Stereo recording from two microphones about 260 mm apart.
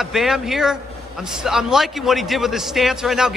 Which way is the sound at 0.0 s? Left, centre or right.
Centre.